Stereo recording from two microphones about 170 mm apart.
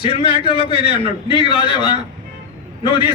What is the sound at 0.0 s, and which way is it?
A man's voice, 30° left (ahead or behind).